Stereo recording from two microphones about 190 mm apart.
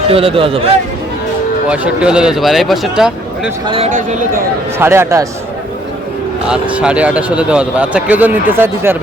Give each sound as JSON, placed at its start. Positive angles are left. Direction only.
{"t": 0.1, "sound": "a man's voice", "side_deg": -30}
{"t": 1.7, "sound": "speech", "side_deg": -5}
{"t": 3.7, "sound": "speech", "side_deg": -35}
{"t": 4.8, "sound": "speech", "side_deg": -15}
{"t": 6.5, "sound": "speech", "side_deg": -5}